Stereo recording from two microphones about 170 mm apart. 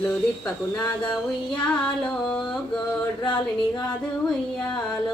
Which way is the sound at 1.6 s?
5° left (ahead or behind).